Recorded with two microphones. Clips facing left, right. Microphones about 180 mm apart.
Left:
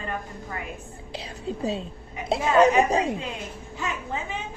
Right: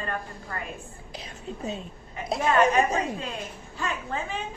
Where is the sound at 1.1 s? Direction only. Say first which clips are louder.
Left 6 dB; 30° left (ahead or behind).